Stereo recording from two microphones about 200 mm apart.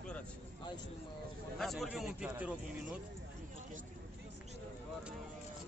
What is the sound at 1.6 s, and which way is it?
A man's voice, centre (ahead or behind).